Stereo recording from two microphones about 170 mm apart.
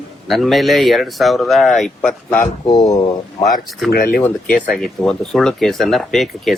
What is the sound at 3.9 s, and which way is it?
Speech, 60° left (ahead or behind).